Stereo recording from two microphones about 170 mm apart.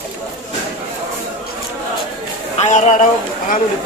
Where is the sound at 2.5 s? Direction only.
40° left (ahead or behind).